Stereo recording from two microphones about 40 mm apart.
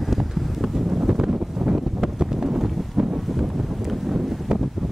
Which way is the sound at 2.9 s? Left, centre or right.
Right.